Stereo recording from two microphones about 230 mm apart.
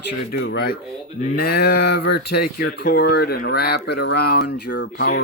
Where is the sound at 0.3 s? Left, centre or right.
Left.